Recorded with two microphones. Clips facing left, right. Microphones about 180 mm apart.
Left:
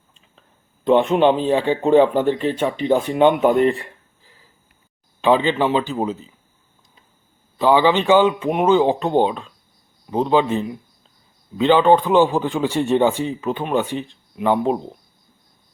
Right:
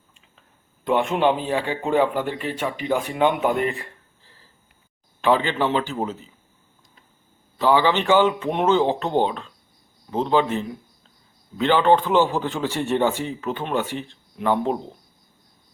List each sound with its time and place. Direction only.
0.9 s speech: 20° left (ahead or behind)
5.2 s speech: 15° left (ahead or behind)
7.6 s speech: 15° left (ahead or behind)